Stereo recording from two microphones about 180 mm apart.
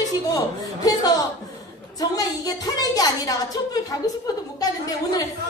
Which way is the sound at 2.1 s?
20° left (ahead or behind).